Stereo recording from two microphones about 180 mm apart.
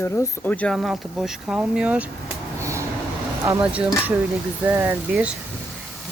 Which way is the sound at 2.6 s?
15° right (ahead or behind).